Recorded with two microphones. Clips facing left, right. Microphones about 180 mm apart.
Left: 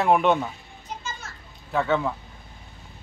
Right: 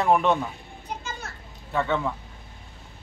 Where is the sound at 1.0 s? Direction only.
60° right (ahead or behind).